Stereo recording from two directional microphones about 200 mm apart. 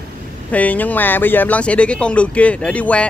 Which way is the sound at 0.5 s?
10° left (ahead or behind).